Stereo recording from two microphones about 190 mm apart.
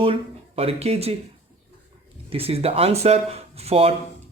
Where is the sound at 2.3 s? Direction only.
30° right (ahead or behind).